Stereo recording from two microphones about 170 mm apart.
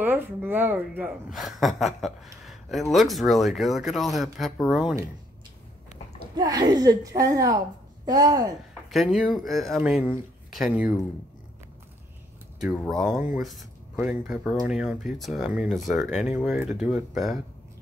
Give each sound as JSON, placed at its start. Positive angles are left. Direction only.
{"t": 0.0, "sound": "speech", "side_deg": -10}
{"t": 1.3, "sound": "speech", "side_deg": 0}
{"t": 6.3, "sound": "speech", "side_deg": -25}
{"t": 8.9, "sound": "speech", "side_deg": 0}
{"t": 12.7, "sound": "speech", "side_deg": 5}
{"t": 13.0, "sound": "speech", "side_deg": -5}